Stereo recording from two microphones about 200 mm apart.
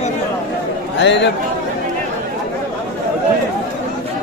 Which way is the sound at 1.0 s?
60° left (ahead or behind).